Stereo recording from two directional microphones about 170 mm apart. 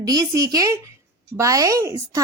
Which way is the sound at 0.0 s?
20° right (ahead or behind).